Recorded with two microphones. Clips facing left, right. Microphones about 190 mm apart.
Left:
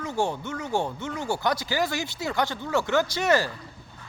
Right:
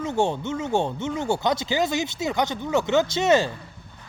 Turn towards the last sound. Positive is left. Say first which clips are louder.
# right 3 dB
turn(degrees=-25)  # may be behind; listen again after turning